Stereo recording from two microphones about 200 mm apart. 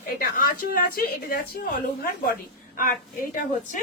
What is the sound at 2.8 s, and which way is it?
Speech, 45° left (ahead or behind).